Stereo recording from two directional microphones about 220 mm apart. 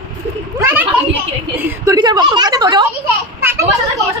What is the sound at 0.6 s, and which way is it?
Children playing, 10° right (ahead or behind).